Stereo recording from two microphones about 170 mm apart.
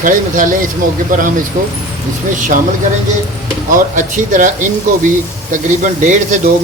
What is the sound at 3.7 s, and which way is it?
Speech, 50° right (ahead or behind).